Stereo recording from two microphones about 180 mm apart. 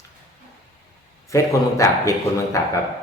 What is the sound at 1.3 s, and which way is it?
Speech, 15° left (ahead or behind).